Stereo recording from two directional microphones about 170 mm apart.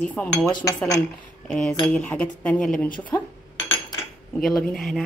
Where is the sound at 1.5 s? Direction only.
5° left (ahead or behind).